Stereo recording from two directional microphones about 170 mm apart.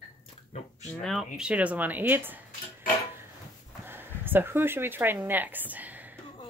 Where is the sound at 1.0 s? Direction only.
Centre (ahead or behind).